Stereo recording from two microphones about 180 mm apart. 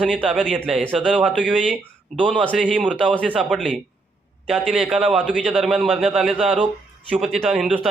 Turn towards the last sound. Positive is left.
turn(degrees=-5)  # may be behind; listen again after turning